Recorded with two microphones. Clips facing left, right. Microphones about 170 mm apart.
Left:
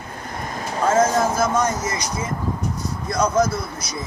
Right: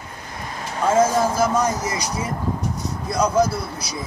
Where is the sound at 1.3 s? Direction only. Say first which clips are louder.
Right 1 dB; 35° right (ahead or behind).